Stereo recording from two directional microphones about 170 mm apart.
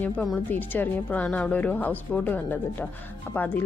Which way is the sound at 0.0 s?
5° left (ahead or behind).